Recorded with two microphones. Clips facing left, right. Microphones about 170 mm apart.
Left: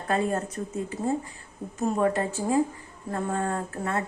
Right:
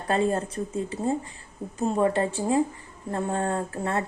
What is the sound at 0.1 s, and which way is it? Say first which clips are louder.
Speech: right 2 dB; 30° right (ahead or behind).